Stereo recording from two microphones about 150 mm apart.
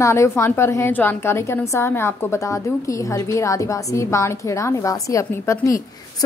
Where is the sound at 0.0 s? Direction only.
20° left (ahead or behind).